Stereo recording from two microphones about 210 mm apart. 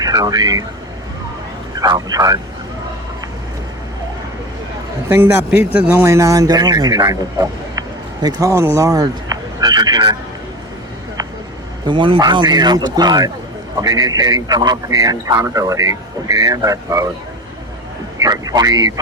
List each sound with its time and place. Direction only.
0.0 s speech: 15° right (ahead or behind)
1.7 s speech: 20° right (ahead or behind)
5.0 s a man's voice: 10° right (ahead or behind)
11.9 s speech: 25° right (ahead or behind)
18.2 s speech: 20° right (ahead or behind)